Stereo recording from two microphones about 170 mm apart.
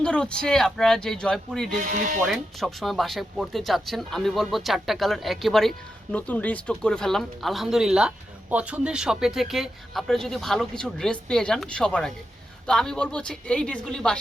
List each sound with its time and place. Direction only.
0.0 s speech: 5° left (ahead or behind)
1.8 s speech: 50° right (ahead or behind)
2.2 s speech: centre (ahead or behind)